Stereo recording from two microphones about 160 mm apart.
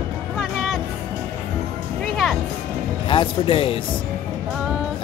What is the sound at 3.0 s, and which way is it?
Speech, 35° left (ahead or behind).